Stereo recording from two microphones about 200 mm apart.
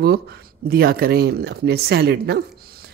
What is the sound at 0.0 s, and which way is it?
Speech, 50° right (ahead or behind).